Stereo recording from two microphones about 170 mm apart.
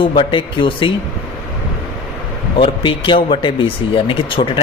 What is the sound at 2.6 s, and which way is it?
Speech, 30° left (ahead or behind).